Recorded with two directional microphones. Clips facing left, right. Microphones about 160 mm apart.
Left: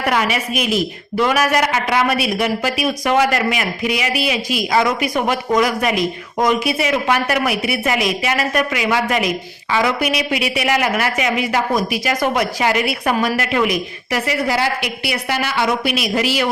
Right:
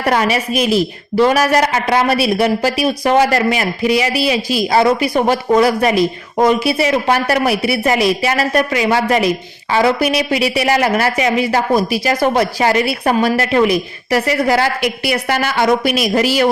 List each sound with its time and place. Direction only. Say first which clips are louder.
0.0 s a man's voice: right 3 dB; 35° right (ahead or behind)